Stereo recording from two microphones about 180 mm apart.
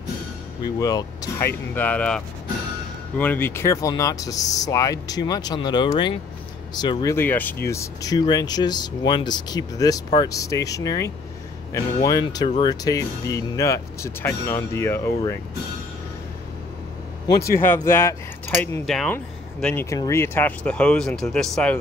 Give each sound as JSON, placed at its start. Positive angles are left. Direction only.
{"t": 0.7, "sound": "speech", "side_deg": 20}
{"t": 17.6, "sound": "speech", "side_deg": 15}
{"t": 18.9, "sound": "speech", "side_deg": 0}